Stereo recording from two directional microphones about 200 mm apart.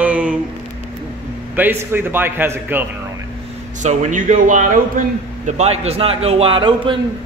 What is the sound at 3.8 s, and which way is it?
A man's voice, 40° right (ahead or behind).